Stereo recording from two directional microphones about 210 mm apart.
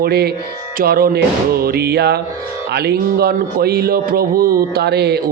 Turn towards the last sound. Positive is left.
turn(degrees=-50)  # may be behind; listen again after turning